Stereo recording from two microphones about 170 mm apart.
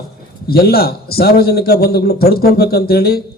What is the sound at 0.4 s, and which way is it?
A man's voice, 65° left (ahead or behind).